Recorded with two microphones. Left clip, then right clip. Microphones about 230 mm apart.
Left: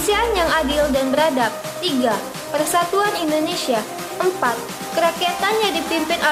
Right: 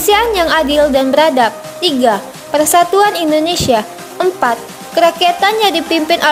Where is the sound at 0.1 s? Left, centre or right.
Right.